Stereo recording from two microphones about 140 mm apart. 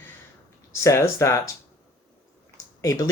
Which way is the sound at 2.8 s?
25° left (ahead or behind).